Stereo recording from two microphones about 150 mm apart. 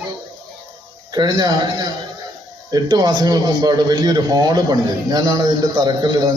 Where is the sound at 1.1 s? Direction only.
30° right (ahead or behind).